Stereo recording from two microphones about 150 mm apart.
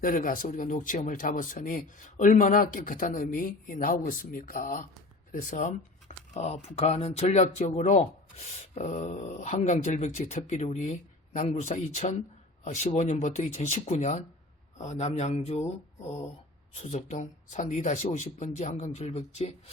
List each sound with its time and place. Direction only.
0.0 s speech: 65° left (ahead or behind)
6.3 s speech: 45° left (ahead or behind)